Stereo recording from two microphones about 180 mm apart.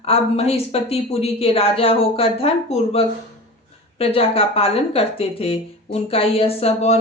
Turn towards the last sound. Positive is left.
turn(degrees=35)  # may be behind; listen again after turning